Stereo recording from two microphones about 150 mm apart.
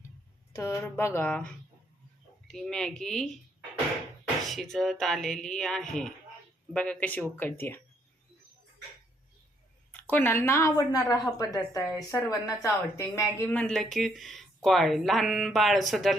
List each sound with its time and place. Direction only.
0.5 s speech: 20° left (ahead or behind)
2.5 s speech: 5° left (ahead or behind)
4.4 s speech: centre (ahead or behind)
9.9 s a woman's voice: 10° left (ahead or behind)
13.5 s speech: 5° left (ahead or behind)